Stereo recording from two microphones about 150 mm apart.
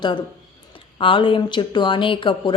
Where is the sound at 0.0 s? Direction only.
30° left (ahead or behind).